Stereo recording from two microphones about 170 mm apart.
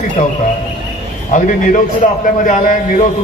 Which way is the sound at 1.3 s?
50° left (ahead or behind).